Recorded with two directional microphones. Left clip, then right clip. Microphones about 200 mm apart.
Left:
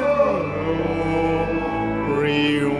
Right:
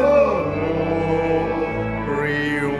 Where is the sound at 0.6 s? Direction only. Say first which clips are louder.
Right 2 dB; centre (ahead or behind).